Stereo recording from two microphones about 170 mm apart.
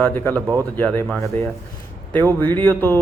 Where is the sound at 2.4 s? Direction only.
10° left (ahead or behind).